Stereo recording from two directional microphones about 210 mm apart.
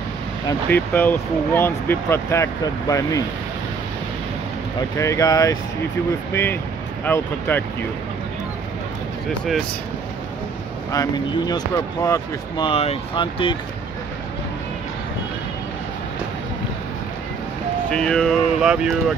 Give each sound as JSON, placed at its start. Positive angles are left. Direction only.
{"t": 0.7, "sound": "speech", "side_deg": 10}
{"t": 4.9, "sound": "speech", "side_deg": 15}
{"t": 10.9, "sound": "speech", "side_deg": 15}
{"t": 17.8, "sound": "speech", "side_deg": 5}